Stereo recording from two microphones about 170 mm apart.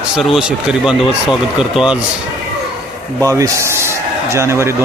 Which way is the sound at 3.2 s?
20° right (ahead or behind).